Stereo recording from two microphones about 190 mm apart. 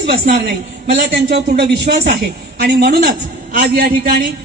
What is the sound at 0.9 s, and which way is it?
A man's voice, 55° right (ahead or behind).